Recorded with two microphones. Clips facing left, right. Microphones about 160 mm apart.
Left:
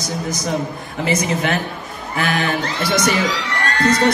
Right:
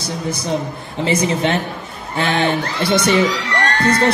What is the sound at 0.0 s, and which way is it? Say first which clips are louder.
A man's voice: even; 30° right (ahead or behind).